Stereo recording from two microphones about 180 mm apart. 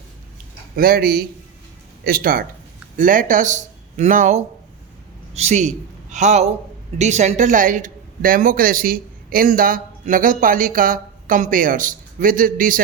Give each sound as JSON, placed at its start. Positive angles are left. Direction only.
{"t": 0.8, "sound": "a man's voice", "side_deg": -55}